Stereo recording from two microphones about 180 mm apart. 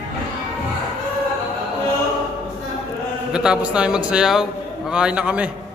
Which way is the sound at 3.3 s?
5° right (ahead or behind).